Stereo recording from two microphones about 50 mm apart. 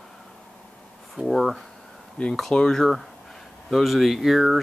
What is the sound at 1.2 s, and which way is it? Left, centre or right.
Speech, centre.